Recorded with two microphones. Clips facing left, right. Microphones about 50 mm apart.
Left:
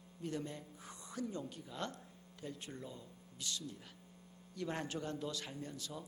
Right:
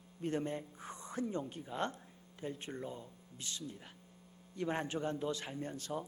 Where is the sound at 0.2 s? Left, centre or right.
Right.